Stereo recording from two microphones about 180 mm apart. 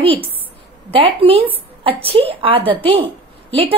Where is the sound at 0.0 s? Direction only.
30° right (ahead or behind).